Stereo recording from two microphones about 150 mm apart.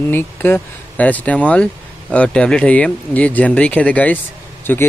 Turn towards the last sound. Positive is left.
turn(degrees=10)  # may be behind; listen again after turning